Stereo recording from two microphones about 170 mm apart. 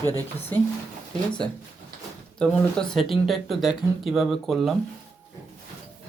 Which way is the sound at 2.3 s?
5° left (ahead or behind).